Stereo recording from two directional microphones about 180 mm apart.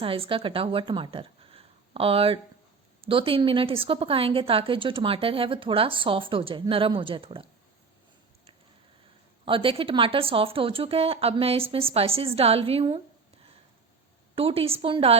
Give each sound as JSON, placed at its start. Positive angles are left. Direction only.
{"t": 0.0, "sound": "a woman's voice", "side_deg": -30}
{"t": 9.5, "sound": "speech", "side_deg": -30}
{"t": 14.3, "sound": "speech", "side_deg": -30}